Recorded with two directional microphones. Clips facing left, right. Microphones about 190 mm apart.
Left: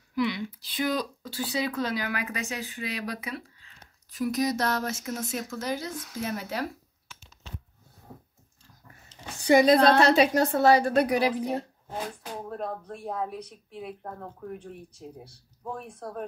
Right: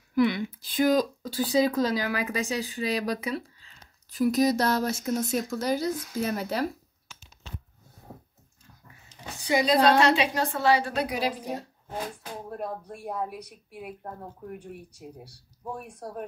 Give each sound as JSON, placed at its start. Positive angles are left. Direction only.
{"t": 0.1, "sound": "speech", "side_deg": -50}
{"t": 9.1, "sound": "a sound", "side_deg": -10}
{"t": 9.5, "sound": "a woman's voice", "side_deg": 55}
{"t": 12.4, "sound": "speech", "side_deg": -10}